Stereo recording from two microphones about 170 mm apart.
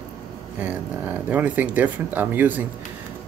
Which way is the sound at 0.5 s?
10° right (ahead or behind).